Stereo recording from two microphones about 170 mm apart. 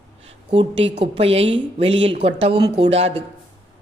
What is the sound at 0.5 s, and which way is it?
A woman's voice, 35° right (ahead or behind).